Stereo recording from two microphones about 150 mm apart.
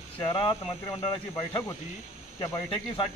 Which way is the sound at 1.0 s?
20° left (ahead or behind).